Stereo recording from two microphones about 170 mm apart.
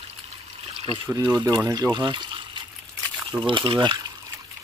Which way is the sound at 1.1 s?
25° right (ahead or behind).